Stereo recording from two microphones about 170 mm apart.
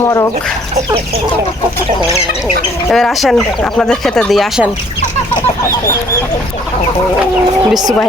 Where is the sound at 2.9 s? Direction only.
Centre (ahead or behind).